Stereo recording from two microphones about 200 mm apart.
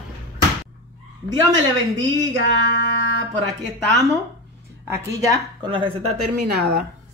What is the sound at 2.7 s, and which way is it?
Music, 65° right (ahead or behind).